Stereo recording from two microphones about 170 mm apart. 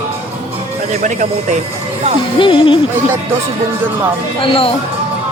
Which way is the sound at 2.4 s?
30° left (ahead or behind).